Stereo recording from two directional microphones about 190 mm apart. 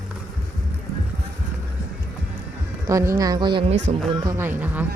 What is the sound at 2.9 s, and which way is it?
Speech, 15° right (ahead or behind).